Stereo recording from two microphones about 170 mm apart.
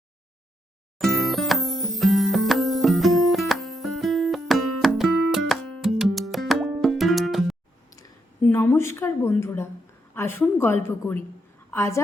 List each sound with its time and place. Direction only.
0.9 s music: centre (ahead or behind)
8.4 s a woman's voice: 10° left (ahead or behind)